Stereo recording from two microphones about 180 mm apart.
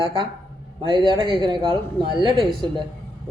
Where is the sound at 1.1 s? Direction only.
25° right (ahead or behind).